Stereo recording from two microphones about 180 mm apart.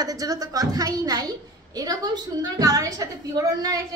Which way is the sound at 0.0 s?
20° right (ahead or behind).